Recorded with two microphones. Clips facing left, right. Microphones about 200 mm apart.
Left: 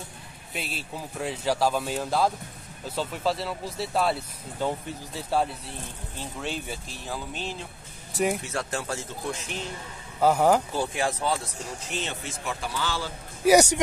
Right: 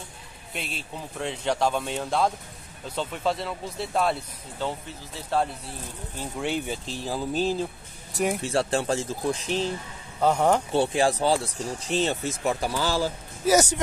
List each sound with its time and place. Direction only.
0.5 s speech: centre (ahead or behind)
5.3 s speech: 10° left (ahead or behind)
6.4 s speech: 15° right (ahead or behind)
6.9 s speech: 30° right (ahead or behind)
8.1 s speech: centre (ahead or behind)
8.4 s speech: 30° right (ahead or behind)
10.2 s speech: 5° left (ahead or behind)
10.7 s speech: 30° right (ahead or behind)